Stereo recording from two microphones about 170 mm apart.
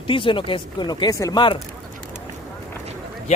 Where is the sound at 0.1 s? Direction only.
30° left (ahead or behind).